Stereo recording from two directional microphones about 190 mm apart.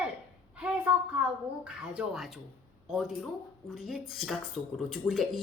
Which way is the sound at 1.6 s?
5° right (ahead or behind).